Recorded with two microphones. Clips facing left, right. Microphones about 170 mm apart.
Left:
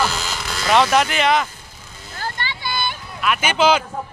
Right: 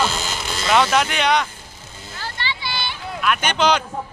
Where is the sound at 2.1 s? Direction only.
50° left (ahead or behind).